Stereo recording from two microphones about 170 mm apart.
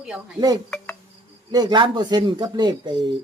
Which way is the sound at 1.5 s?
25° right (ahead or behind).